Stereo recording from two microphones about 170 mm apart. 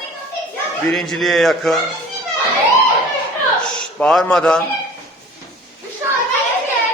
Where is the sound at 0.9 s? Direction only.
Centre (ahead or behind).